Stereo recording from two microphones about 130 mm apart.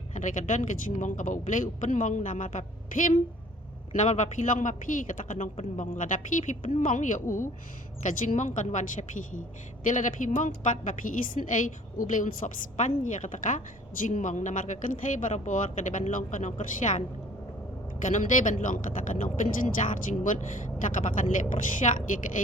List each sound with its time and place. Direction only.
0.1 s a man's voice: 70° left (ahead or behind)
3.9 s a man's voice: 65° left (ahead or behind); by 7.5 s 90° left
8.0 s a man's voice: 75° left (ahead or behind)
18.0 s a man's voice: 75° left (ahead or behind)
20.8 s a woman's voice: 80° left
21.8 s speech: 60° left (ahead or behind)